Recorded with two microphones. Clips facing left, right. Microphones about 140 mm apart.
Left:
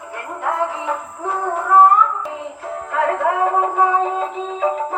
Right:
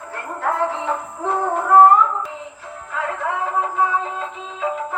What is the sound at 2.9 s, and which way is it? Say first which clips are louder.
Music: left 6 dB; 50° left (ahead or behind).